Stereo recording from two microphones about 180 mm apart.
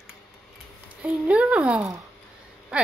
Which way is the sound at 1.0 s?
5° right (ahead or behind).